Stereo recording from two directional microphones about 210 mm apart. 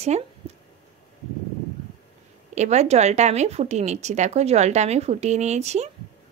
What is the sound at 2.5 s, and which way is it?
A woman's voice, 30° right (ahead or behind).